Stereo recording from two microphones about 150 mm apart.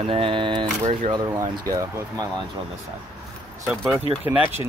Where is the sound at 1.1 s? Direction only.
25° right (ahead or behind).